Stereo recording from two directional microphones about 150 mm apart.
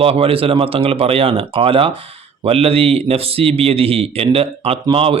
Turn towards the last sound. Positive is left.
turn(degrees=-40)  # may be behind; listen again after turning